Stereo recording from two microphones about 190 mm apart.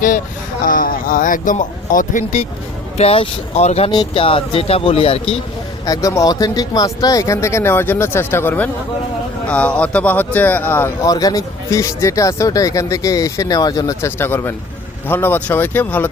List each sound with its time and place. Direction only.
0.6 s speech: 45° left (ahead or behind); by 5.4 s 30° left (ahead or behind)
5.8 s speech: 20° left (ahead or behind)